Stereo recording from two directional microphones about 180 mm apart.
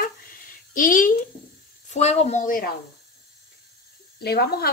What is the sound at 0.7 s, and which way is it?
Speech, 50° left (ahead or behind).